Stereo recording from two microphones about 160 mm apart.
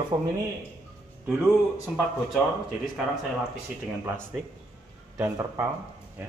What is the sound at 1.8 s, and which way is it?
Speech, 5° right (ahead or behind).